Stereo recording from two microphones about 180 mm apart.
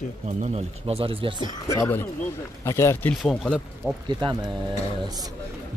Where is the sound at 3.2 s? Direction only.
5° left (ahead or behind).